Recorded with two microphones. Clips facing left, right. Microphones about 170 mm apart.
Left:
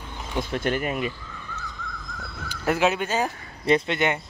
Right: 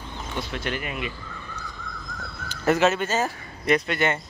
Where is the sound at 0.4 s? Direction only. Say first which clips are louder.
Left 5 dB; 50° left (ahead or behind).